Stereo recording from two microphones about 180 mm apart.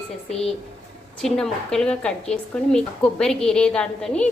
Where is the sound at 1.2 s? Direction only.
Centre (ahead or behind).